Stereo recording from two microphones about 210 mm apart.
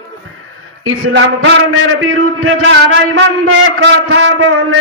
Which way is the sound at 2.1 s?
80° right.